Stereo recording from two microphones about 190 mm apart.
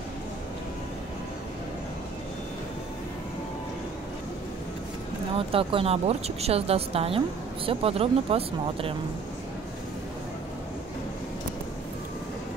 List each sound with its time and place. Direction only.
5.5 s speech: 30° right (ahead or behind)